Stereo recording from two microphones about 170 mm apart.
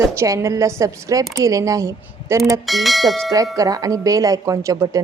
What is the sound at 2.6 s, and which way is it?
Speech, centre (ahead or behind).